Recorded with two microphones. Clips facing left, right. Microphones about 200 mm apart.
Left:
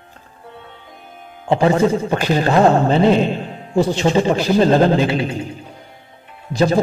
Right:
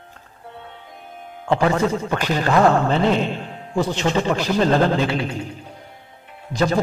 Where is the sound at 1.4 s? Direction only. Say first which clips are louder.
Left 4 dB; 25° left (ahead or behind).